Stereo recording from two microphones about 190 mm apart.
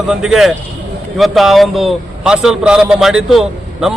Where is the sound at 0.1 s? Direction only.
5° right (ahead or behind).